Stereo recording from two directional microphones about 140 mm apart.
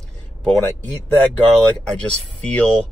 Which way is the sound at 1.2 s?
10° left (ahead or behind).